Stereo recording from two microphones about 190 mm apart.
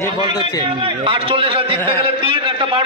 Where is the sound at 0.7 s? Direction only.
25° right (ahead or behind).